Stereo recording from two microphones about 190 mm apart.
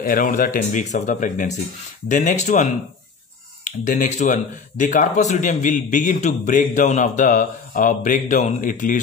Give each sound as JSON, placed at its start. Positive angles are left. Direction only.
{"t": 0.0, "sound": "speech", "side_deg": 45}